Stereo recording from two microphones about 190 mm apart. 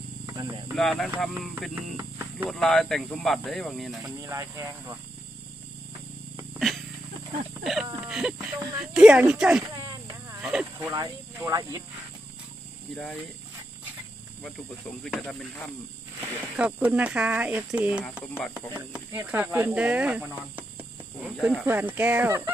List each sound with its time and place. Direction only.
0.3 s speech: 15° right (ahead or behind)
0.7 s speech: centre (ahead or behind)
4.2 s speech: 15° right (ahead or behind)
6.3 s a sound: centre (ahead or behind)
7.6 s speech: centre (ahead or behind)
10.9 s speech: 20° right (ahead or behind)
12.9 s speech: centre (ahead or behind)
15.0 s speech: 5° left (ahead or behind)
16.5 s speech: 10° right (ahead or behind)